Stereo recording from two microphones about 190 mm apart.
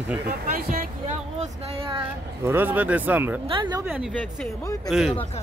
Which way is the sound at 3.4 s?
25° right (ahead or behind).